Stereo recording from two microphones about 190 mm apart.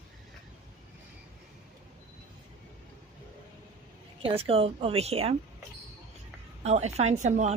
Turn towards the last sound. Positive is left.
turn(degrees=-40)  # may be behind; listen again after turning